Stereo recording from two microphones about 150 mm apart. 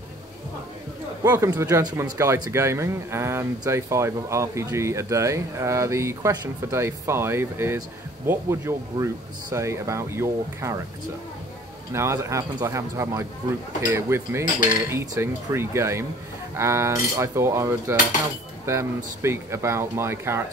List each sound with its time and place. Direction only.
1.2 s speech: 20° right (ahead or behind)
11.9 s speech: 20° right (ahead or behind)